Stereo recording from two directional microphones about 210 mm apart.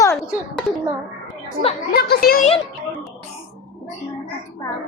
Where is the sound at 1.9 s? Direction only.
45° left (ahead or behind).